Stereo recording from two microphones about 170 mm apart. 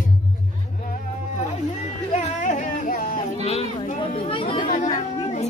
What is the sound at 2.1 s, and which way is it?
Music, 45° left (ahead or behind).